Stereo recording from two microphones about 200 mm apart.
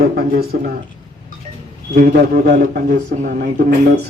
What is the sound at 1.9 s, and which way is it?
A man's voice, 45° right (ahead or behind).